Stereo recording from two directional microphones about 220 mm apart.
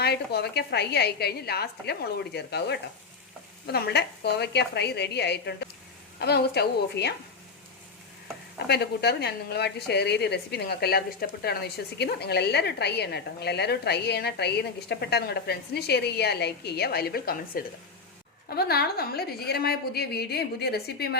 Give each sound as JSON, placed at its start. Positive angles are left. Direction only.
{"t": 0.0, "sound": "a woman's voice", "side_deg": 45}
{"t": 8.6, "sound": "a woman's voice", "side_deg": 50}